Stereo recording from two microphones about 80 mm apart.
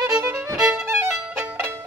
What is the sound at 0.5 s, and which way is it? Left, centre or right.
Violin, centre.